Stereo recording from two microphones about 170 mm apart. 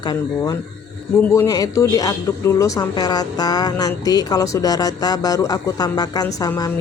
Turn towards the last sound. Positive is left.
turn(degrees=20)  # may be behind; listen again after turning